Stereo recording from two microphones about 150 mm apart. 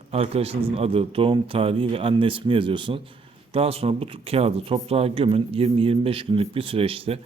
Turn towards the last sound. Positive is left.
turn(degrees=-40)  # may be behind; listen again after turning